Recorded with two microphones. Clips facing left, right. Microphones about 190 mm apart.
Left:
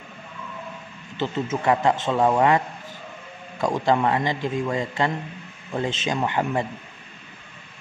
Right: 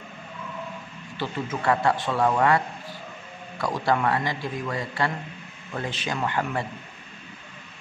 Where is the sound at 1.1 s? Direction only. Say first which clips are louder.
Left 4 dB; 20° left (ahead or behind).